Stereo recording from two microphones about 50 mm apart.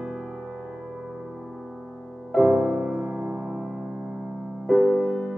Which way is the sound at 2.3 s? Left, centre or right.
Centre.